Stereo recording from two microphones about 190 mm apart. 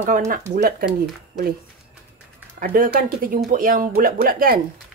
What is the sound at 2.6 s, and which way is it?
Speech, 50° right (ahead or behind).